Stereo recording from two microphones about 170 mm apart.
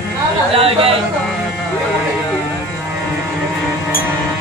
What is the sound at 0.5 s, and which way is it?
Speech, 35° right (ahead or behind).